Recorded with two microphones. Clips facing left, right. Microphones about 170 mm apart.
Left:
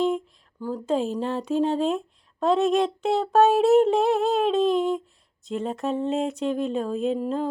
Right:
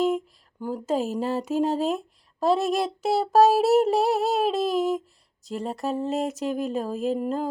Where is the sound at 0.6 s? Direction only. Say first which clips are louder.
Left 1 dB; 5° right (ahead or behind).